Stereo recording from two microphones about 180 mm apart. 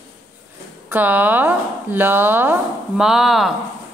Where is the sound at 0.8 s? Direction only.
10° right (ahead or behind).